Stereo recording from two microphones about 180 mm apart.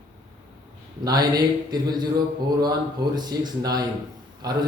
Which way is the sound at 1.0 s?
20° right (ahead or behind).